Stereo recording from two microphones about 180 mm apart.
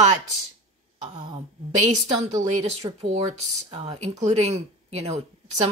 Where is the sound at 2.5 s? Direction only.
40° right (ahead or behind).